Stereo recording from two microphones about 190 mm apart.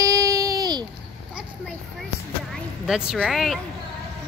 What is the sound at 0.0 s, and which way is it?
Baby cry, 20° right (ahead or behind).